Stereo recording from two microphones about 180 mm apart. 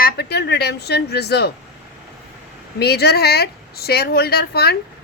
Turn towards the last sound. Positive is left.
turn(degrees=60)  # may be behind; listen again after turning